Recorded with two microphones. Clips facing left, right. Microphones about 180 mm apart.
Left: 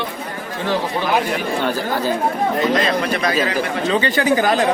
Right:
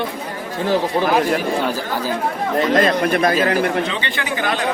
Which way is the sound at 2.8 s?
50° right (ahead or behind).